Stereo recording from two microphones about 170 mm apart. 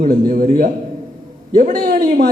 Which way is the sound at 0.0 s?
55° right (ahead or behind).